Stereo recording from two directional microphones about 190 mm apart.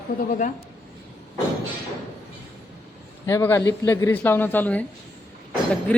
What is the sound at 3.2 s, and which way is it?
Speech, 15° left (ahead or behind).